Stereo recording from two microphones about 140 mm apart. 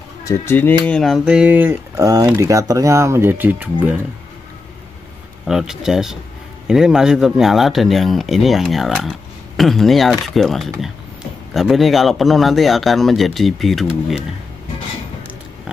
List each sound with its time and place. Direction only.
0.2 s a man's voice: 20° left (ahead or behind); by 2.0 s 15° right (ahead or behind)
2.0 s speech: 25° right (ahead or behind)
5.5 s a man's voice: 5° right (ahead or behind)